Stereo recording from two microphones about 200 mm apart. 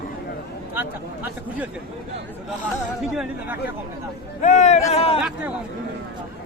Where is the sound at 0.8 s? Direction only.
10° right (ahead or behind).